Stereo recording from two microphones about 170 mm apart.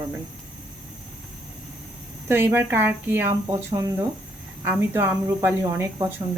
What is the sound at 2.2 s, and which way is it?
Speech, 15° right (ahead or behind).